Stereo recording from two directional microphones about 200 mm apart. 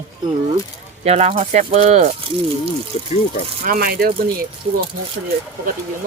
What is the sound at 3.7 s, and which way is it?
Speech, 50° right (ahead or behind).